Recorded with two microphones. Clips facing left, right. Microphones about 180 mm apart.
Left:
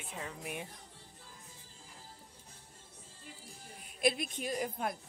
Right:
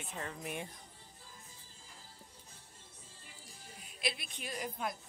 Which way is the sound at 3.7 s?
50° left (ahead or behind).